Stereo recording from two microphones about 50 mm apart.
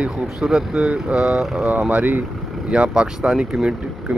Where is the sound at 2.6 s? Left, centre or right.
Right.